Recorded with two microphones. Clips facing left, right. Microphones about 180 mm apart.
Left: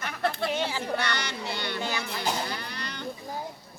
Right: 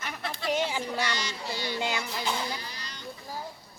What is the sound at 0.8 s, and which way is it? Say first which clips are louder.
Speech: left 2 dB; 60° left (ahead or behind).